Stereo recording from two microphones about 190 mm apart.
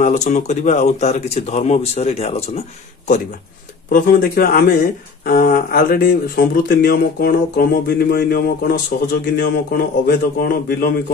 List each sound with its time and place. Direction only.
0.0 s speech: 35° left (ahead or behind)
3.9 s speech: 50° left (ahead or behind)